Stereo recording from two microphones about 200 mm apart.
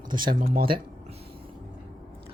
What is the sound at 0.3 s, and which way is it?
Speech, 45° right (ahead or behind).